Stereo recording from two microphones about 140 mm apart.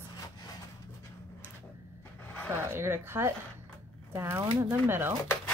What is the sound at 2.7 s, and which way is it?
Speech, 15° right (ahead or behind).